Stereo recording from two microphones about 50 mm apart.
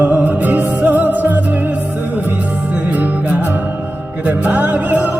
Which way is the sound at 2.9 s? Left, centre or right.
Right.